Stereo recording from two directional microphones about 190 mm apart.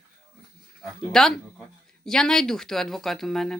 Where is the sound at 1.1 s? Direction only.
5° left (ahead or behind).